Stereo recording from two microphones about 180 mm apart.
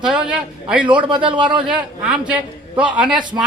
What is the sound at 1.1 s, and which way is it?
Speech, 25° right (ahead or behind).